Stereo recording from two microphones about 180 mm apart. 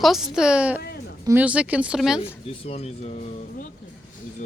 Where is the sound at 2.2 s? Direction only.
35° left (ahead or behind).